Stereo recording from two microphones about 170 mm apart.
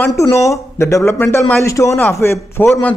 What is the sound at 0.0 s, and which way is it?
A man's voice, 15° left (ahead or behind).